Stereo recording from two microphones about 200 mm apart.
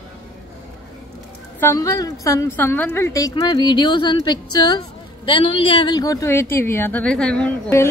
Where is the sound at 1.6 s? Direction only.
15° left (ahead or behind).